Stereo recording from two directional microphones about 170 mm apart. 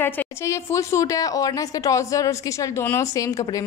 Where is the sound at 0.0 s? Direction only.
15° left (ahead or behind).